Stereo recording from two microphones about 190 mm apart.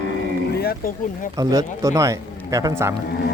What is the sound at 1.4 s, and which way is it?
Speech, 20° right (ahead or behind).